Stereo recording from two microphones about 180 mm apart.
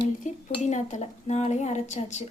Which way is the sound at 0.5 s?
40° left (ahead or behind).